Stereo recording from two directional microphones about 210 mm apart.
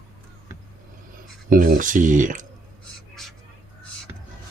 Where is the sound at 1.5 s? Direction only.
40° right (ahead or behind).